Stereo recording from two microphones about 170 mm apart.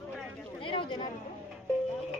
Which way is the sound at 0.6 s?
30° left (ahead or behind).